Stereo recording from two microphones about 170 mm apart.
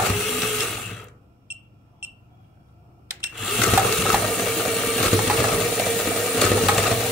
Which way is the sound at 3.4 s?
Centre (ahead or behind).